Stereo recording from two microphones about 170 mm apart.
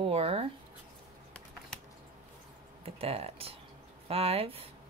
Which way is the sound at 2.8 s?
35° right (ahead or behind).